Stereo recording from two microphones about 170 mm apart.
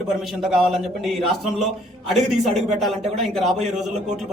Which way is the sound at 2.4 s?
Centre (ahead or behind).